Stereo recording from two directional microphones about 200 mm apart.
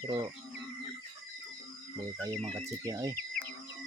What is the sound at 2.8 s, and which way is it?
Speech, 15° right (ahead or behind).